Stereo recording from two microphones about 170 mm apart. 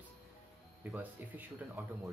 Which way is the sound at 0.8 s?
10° right (ahead or behind).